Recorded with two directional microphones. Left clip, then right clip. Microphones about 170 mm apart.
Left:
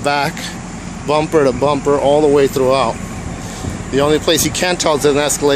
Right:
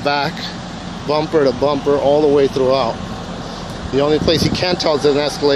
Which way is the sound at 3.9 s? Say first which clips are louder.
Left 1 dB; 10° left (ahead or behind).